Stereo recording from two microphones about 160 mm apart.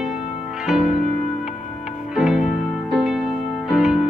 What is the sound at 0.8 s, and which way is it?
Music, 45° left (ahead or behind).